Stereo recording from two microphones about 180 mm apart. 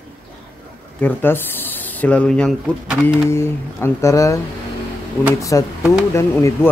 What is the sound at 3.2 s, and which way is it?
Speech, 15° left (ahead or behind).